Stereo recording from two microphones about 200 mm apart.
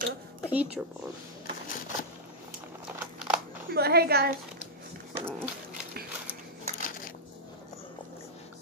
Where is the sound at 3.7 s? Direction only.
50° right (ahead or behind).